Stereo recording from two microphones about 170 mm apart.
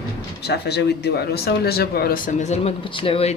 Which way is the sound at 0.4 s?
75° left (ahead or behind).